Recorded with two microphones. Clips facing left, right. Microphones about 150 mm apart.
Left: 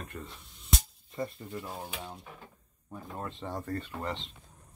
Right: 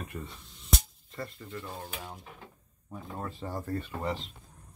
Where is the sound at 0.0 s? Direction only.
5° right (ahead or behind).